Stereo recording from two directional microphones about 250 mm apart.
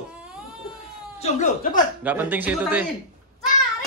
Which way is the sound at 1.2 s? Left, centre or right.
Left.